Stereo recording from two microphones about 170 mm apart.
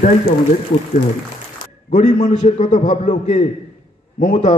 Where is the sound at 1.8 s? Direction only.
45° left (ahead or behind).